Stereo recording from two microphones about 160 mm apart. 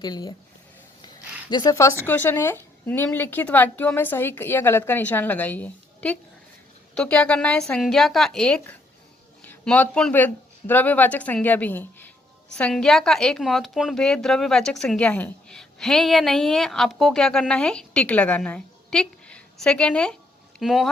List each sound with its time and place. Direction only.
0.0 s speech: 25° left (ahead or behind)
1.0 s a sound: 25° left (ahead or behind)
2.0 s a woman's voice: 15° left (ahead or behind)